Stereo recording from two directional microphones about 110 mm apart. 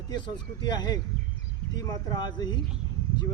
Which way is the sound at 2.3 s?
40° left (ahead or behind).